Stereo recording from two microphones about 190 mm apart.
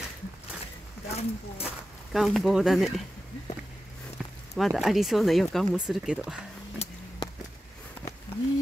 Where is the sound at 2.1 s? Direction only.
Centre (ahead or behind).